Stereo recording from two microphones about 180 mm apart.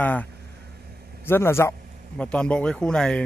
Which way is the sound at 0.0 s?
10° left (ahead or behind).